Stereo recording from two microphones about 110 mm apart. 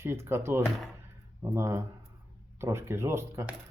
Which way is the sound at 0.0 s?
25° right (ahead or behind).